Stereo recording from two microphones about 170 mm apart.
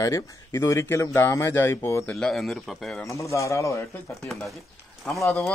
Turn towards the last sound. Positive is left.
turn(degrees=15)  # may be behind; listen again after turning